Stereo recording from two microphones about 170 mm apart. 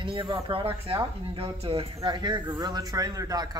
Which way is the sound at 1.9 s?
25° right (ahead or behind).